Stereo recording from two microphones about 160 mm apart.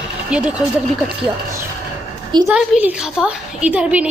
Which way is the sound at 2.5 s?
10° right (ahead or behind).